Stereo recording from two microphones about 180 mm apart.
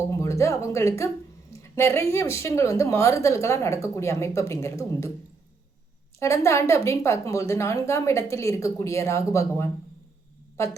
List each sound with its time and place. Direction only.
0.1 s a woman's voice: 15° left (ahead or behind)
6.1 s a woman's voice: 15° left (ahead or behind)